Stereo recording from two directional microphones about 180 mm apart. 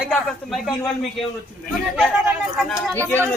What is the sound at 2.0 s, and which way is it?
Speech, centre (ahead or behind).